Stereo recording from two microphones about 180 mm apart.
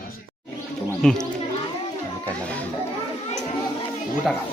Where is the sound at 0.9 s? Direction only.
5° left (ahead or behind).